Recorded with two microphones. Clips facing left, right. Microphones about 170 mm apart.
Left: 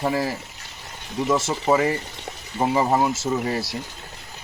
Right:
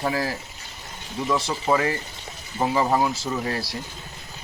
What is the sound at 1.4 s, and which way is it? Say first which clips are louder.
Speech: left 2 dB; 25° left (ahead or behind).